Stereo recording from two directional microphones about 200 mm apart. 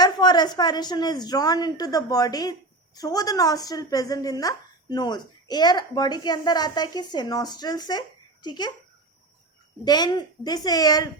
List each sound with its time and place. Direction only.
0.0 s a woman's voice: 20° left (ahead or behind)
9.8 s a woman's voice: 20° left (ahead or behind)